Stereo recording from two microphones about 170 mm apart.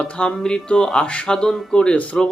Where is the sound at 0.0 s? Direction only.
5° left (ahead or behind).